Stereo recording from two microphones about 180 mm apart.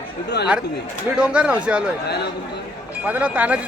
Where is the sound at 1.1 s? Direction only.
5° right (ahead or behind).